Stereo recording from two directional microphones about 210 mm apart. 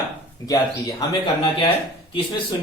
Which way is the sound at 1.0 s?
15° left (ahead or behind).